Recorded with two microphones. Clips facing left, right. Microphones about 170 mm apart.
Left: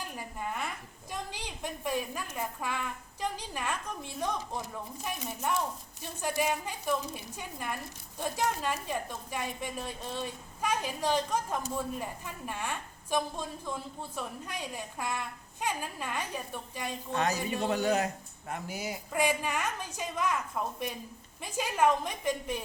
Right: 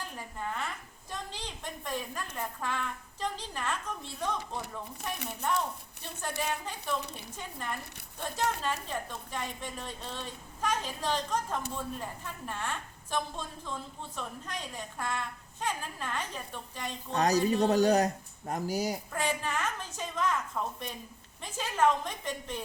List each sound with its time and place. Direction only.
0.0 s a sound: 10° left (ahead or behind)
2.3 s a woman's voice: 10° left (ahead or behind)
6.0 s a woman's voice: 10° left (ahead or behind)
17.2 s speech: 35° right (ahead or behind)
19.1 s a woman's voice: 10° left (ahead or behind)